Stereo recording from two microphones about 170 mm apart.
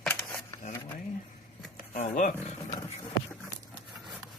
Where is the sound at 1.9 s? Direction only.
50° left (ahead or behind).